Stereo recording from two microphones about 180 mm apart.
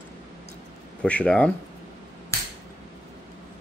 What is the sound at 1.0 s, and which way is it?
Speech, 5° left (ahead or behind).